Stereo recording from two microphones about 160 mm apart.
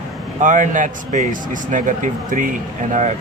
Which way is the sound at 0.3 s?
50° right (ahead or behind).